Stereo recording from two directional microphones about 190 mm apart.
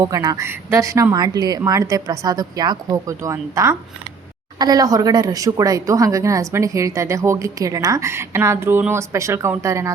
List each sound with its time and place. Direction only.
0.0 s speech: 20° right (ahead or behind)